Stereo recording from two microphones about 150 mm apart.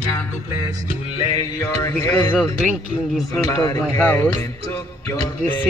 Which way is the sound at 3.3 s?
20° left (ahead or behind).